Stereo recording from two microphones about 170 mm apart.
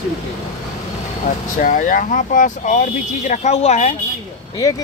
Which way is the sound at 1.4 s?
50° left (ahead or behind).